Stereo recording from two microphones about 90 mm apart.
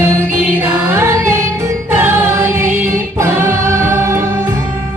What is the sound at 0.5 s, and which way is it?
Music, 25° right (ahead or behind).